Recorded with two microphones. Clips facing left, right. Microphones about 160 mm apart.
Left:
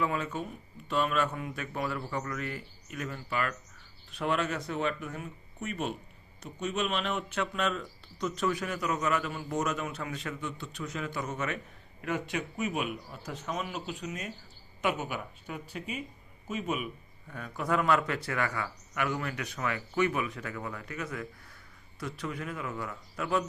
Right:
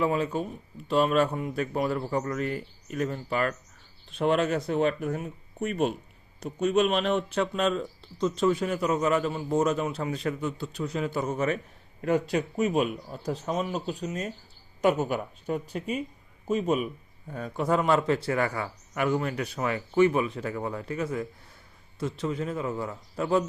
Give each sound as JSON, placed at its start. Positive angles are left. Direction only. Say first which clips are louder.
{"t": 0.0, "sound": "speech", "louder": "right 6 dB", "side_deg": -30}